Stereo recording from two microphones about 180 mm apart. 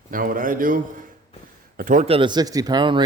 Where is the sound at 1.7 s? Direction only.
45° right (ahead or behind).